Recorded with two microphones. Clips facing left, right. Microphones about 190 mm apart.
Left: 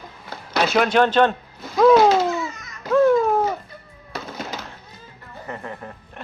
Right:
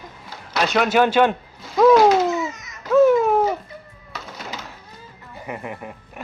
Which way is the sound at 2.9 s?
5° right (ahead or behind).